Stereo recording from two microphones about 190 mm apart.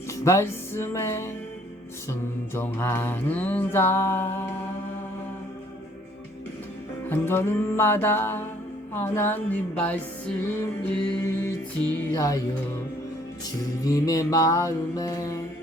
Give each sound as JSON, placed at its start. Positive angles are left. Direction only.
{"t": 0.1, "sound": "music", "side_deg": 15}
{"t": 2.6, "sound": "mantra", "side_deg": 10}
{"t": 7.1, "sound": "mantra", "side_deg": 10}
{"t": 12.1, "sound": "speech", "side_deg": 20}
{"t": 13.8, "sound": "mantra", "side_deg": 20}